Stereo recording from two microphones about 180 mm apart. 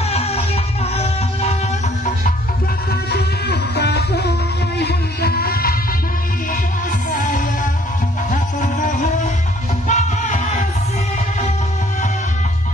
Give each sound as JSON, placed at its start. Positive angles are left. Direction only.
{"t": 0.0, "sound": "music", "side_deg": 35}
{"t": 2.9, "sound": "music", "side_deg": 65}
{"t": 7.1, "sound": "music", "side_deg": 45}